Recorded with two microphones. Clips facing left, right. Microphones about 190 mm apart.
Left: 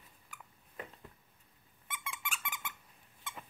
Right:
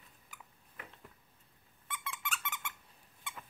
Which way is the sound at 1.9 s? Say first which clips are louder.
Right 1 dB; 15° left (ahead or behind).